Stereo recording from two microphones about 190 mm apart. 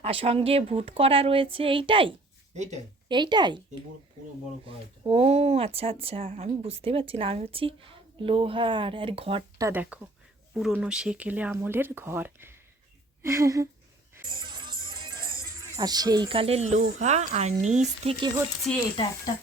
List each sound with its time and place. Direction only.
0.0 s speech: 30° right (ahead or behind)
3.1 s speech: 25° right (ahead or behind)
4.6 s speech: 30° right (ahead or behind)
9.6 s speech: 10° right (ahead or behind)
14.3 s music: 25° right (ahead or behind)
15.7 s speech: 20° right (ahead or behind)
18.7 s speech: 5° left (ahead or behind)